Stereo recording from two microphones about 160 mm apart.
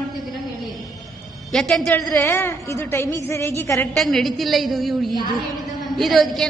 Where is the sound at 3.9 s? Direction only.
Centre (ahead or behind).